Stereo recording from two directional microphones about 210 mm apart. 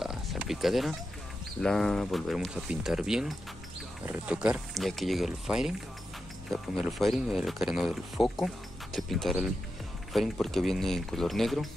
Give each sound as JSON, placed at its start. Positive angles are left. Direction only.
{"t": 0.0, "sound": "oink", "side_deg": 0}
{"t": 1.6, "sound": "speech", "side_deg": 0}